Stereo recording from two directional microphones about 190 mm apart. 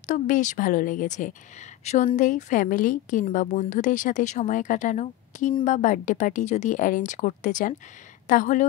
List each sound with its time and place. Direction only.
0.0 s a woman's voice: 40° left (ahead or behind)